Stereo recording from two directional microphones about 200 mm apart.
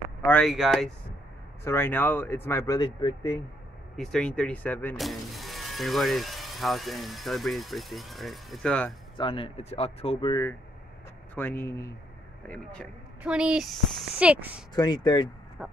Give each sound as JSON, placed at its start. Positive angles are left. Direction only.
{"t": 0.2, "sound": "speech", "side_deg": 5}
{"t": 1.6, "sound": "speech", "side_deg": 10}
{"t": 3.9, "sound": "speech", "side_deg": 5}
{"t": 9.2, "sound": "speech", "side_deg": 25}
{"t": 11.3, "sound": "speech", "side_deg": 10}
{"t": 14.7, "sound": "speech", "side_deg": 20}
{"t": 15.6, "sound": "speech", "side_deg": 0}